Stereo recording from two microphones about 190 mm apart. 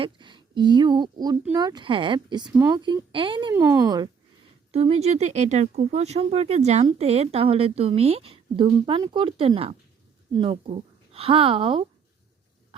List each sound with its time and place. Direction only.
0.0 s a woman's voice: 25° right (ahead or behind)
4.7 s a woman's voice: 35° right (ahead or behind)